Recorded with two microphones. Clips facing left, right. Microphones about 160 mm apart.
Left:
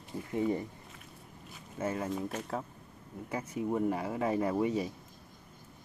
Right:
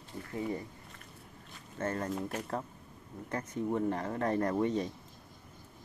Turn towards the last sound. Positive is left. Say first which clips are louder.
# even
turn(degrees=5)  # may be behind; listen again after turning